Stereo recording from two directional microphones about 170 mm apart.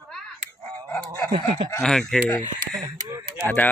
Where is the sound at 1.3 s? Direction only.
30° right (ahead or behind).